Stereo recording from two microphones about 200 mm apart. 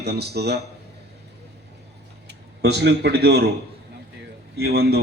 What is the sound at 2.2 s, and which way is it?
Speech, 55° right (ahead or behind).